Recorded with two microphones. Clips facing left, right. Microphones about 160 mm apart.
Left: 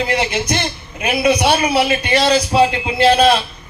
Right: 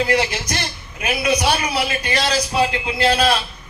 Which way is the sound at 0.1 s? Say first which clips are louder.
Left 2 dB; 25° left (ahead or behind).